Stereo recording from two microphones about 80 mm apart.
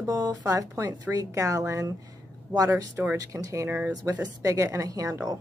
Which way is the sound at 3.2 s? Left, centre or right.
Right.